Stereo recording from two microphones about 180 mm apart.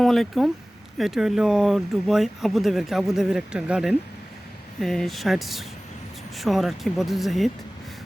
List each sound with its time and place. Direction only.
0.0 s speech: centre (ahead or behind)